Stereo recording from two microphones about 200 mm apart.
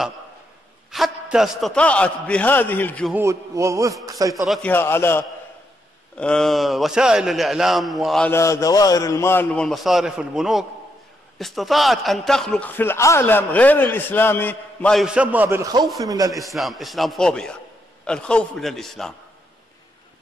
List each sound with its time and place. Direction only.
0.9 s a man's voice: centre (ahead or behind)
3.1 s a man's voice: 15° right (ahead or behind)
4.5 s a man's voice: 10° left (ahead or behind)
8.3 s a man's voice: 15° left (ahead or behind); by 16.3 s 15° right (ahead or behind)
16.3 s a man's voice: centre (ahead or behind)